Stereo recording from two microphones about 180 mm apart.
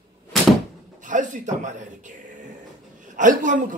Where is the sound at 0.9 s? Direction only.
45° right (ahead or behind).